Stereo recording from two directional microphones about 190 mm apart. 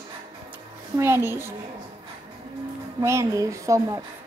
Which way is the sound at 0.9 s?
15° right (ahead or behind).